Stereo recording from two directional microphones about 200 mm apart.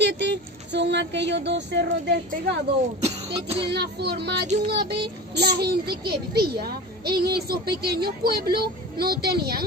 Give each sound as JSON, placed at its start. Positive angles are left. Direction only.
{"t": 0.0, "sound": "speech", "side_deg": -60}
{"t": 3.0, "sound": "music", "side_deg": -30}
{"t": 3.7, "sound": "child singing", "side_deg": -55}
{"t": 4.6, "sound": "a child's voice", "side_deg": -55}